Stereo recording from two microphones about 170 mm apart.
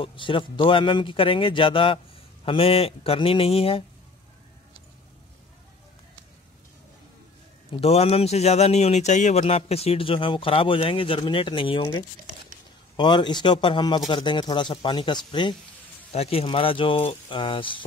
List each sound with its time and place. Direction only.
0.0 s speech: 30° left (ahead or behind)
7.7 s a man's voice: 35° left (ahead or behind)